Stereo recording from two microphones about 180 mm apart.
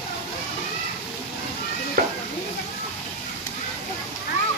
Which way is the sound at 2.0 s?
55° right (ahead or behind).